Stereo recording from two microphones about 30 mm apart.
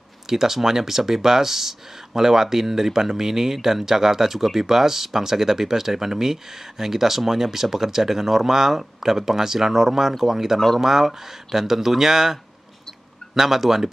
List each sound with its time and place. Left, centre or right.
0.3 s speech: centre